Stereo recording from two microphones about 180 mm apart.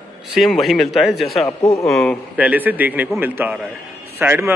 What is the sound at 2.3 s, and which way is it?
A man's voice, 10° right (ahead or behind).